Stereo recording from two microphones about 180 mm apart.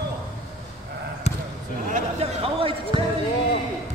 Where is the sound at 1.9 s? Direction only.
40° right (ahead or behind).